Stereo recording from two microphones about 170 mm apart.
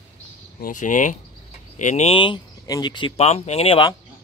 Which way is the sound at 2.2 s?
25° left (ahead or behind).